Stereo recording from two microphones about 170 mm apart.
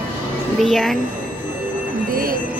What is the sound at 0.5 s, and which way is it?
Speech, centre (ahead or behind).